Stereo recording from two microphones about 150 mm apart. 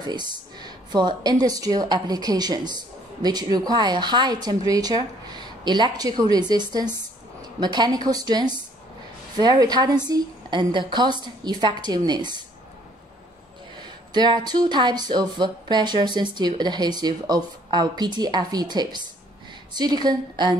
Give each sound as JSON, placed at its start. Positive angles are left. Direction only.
{"t": 0.0, "sound": "speech", "side_deg": -30}
{"t": 13.7, "sound": "speech", "side_deg": -30}